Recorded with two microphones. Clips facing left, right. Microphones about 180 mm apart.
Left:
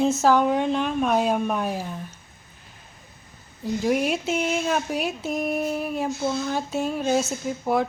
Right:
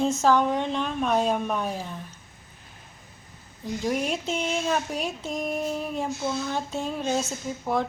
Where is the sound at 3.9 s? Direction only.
5° left (ahead or behind).